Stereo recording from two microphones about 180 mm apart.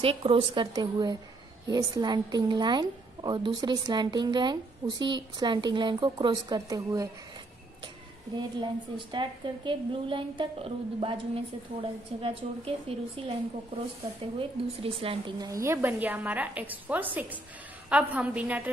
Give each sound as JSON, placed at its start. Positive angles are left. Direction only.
{"t": 0.0, "sound": "a woman's voice", "side_deg": -30}
{"t": 8.4, "sound": "a woman's voice", "side_deg": -25}